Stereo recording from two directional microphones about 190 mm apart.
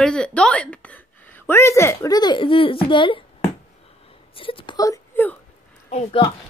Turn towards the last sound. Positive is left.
turn(degrees=35)  # may be behind; listen again after turning